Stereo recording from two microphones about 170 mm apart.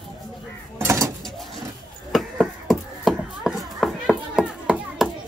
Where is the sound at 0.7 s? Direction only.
15° right (ahead or behind).